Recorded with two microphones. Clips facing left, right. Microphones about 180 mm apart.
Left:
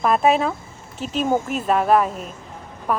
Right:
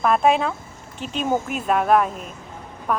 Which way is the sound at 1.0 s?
40° left (ahead or behind).